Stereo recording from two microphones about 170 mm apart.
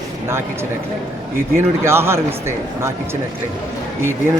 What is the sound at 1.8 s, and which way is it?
Speech, 15° right (ahead or behind).